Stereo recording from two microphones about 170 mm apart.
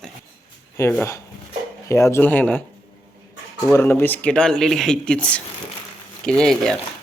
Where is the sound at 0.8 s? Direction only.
15° left (ahead or behind).